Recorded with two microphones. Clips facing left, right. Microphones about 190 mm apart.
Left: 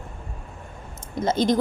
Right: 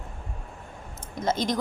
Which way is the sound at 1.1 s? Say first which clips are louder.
Left 5 dB; 30° left (ahead or behind).